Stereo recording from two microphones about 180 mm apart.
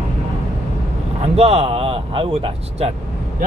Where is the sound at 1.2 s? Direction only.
35° right (ahead or behind).